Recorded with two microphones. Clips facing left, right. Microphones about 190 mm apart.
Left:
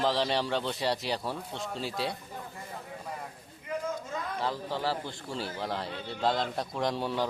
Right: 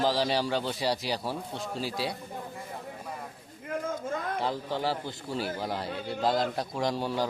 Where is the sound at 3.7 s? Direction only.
50° right (ahead or behind).